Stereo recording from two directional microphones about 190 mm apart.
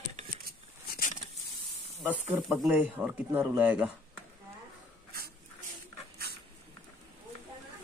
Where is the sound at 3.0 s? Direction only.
5° right (ahead or behind).